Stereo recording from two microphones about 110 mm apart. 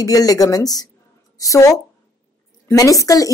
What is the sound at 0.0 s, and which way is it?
Speech, 35° left (ahead or behind).